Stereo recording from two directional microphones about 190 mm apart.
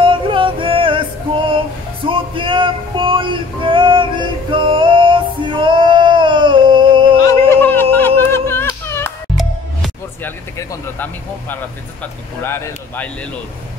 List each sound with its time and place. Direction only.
0.0 s music: 25° right (ahead or behind)
7.2 s a sound: 10° left (ahead or behind)
8.3 s yodeling: 15° left (ahead or behind)
10.2 s speech: 15° left (ahead or behind)